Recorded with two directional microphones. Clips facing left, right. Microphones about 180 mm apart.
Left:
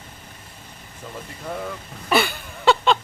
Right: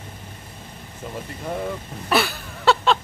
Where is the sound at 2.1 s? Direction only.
Centre (ahead or behind).